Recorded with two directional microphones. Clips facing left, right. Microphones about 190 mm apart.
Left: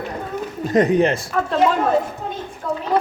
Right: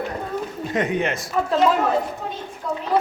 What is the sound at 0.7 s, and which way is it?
Speech, 40° left (ahead or behind).